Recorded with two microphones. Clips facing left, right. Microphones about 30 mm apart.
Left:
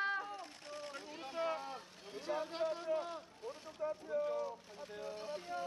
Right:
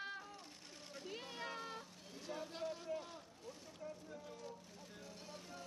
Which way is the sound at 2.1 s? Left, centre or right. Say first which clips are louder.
Left 8 dB; left.